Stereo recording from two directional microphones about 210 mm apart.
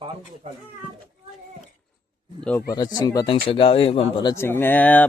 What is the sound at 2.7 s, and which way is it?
Speech, 20° left (ahead or behind).